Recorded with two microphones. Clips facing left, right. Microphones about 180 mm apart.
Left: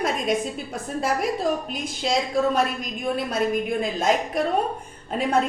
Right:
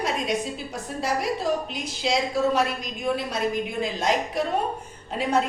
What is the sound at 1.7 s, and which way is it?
A woman's voice, 50° left (ahead or behind).